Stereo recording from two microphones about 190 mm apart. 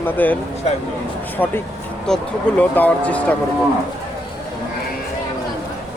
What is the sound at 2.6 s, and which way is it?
Speech, 5° left (ahead or behind).